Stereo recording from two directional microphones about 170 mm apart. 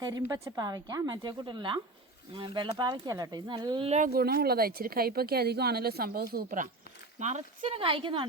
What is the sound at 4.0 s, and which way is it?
A woman's voice, 60° right (ahead or behind).